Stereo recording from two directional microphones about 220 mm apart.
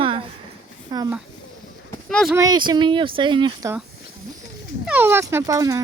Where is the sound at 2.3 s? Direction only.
15° right (ahead or behind).